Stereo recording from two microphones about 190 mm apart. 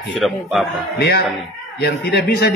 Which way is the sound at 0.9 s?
55° left (ahead or behind).